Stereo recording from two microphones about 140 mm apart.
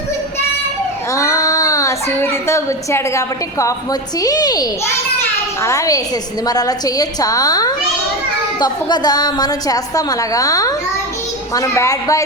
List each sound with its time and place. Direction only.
1.1 s a woman's voice: 25° left (ahead or behind)